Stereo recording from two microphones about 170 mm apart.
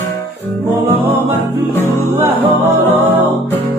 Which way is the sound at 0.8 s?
15° right (ahead or behind).